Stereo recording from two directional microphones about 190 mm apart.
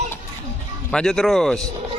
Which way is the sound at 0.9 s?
Centre (ahead or behind).